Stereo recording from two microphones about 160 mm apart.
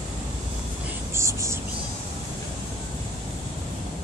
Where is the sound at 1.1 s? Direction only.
15° right (ahead or behind).